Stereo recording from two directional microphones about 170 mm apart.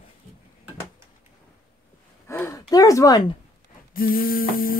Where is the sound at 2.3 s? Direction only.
15° left (ahead or behind).